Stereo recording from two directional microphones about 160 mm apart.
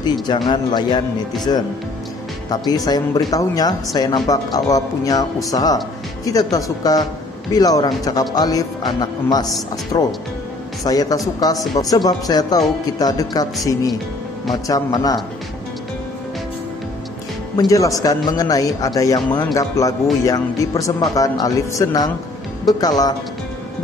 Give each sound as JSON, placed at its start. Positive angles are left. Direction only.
{"t": 0.0, "sound": "speech", "side_deg": 25}
{"t": 14.5, "sound": "speech", "side_deg": 25}
{"t": 17.6, "sound": "speech", "side_deg": 20}